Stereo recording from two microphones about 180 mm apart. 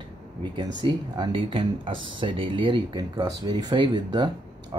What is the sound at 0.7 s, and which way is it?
Speech, 25° right (ahead or behind).